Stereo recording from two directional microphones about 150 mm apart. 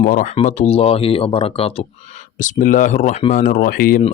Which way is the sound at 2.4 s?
60° left (ahead or behind).